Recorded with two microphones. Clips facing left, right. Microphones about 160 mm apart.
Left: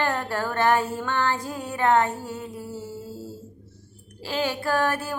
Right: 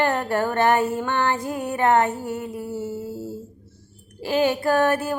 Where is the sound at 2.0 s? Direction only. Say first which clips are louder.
Right 3 dB; 60° right (ahead or behind).